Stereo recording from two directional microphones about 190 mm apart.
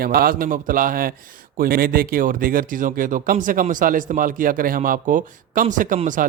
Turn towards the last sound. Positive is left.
turn(degrees=-45)  # may be behind; listen again after turning